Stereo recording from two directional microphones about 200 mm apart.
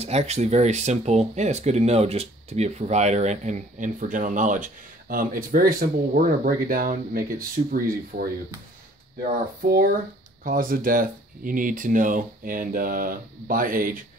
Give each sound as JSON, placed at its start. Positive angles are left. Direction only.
{"t": 0.0, "sound": "speech", "side_deg": -35}
{"t": 9.7, "sound": "speech", "side_deg": -45}